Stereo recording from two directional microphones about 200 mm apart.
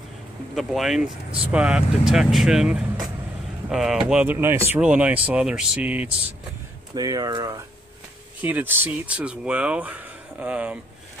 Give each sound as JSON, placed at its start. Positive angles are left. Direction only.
{"t": 0.6, "sound": "speech", "side_deg": 0}
{"t": 7.0, "sound": "speech", "side_deg": -20}